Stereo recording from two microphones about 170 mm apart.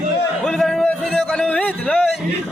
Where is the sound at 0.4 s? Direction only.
5° left (ahead or behind).